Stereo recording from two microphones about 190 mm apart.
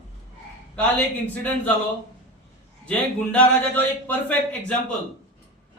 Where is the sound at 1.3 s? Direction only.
10° left (ahead or behind).